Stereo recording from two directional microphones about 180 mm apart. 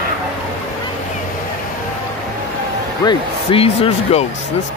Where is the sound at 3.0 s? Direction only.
25° left (ahead or behind).